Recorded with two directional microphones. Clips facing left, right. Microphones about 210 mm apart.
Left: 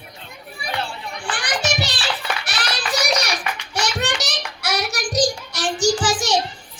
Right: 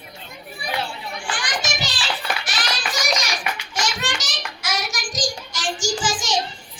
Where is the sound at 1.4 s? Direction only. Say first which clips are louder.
Left 7 dB; 60° left (ahead or behind).